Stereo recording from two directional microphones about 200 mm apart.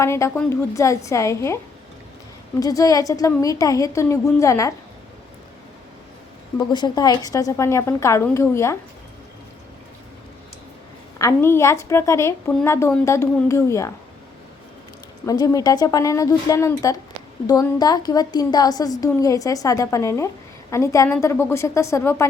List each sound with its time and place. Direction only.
0.0 s a woman's voice: 15° left (ahead or behind)
2.6 s a woman's voice: 15° left (ahead or behind)
6.7 s a woman's voice: 20° left (ahead or behind)
11.2 s a woman's voice: 15° left (ahead or behind)
15.3 s a woman's voice: 20° left (ahead or behind)